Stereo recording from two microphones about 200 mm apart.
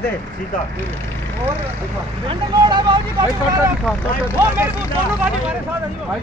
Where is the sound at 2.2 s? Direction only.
25° right (ahead or behind).